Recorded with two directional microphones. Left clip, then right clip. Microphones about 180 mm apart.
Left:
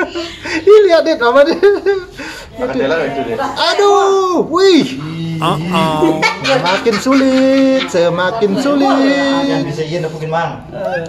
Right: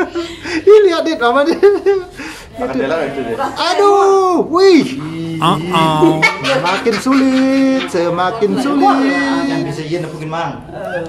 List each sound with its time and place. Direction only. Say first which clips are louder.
0.0 s chuckle: even; centre (ahead or behind)
3.5 s speech: even; centre (ahead or behind)
6.1 s speech: right 1 dB; 35° right (ahead or behind)
7.1 s speech: left 3 dB; centre (ahead or behind)